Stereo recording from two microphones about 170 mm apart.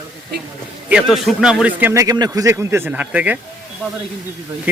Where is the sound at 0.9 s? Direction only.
Centre (ahead or behind).